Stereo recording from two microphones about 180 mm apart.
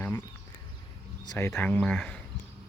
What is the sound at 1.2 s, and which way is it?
Speech, 20° left (ahead or behind).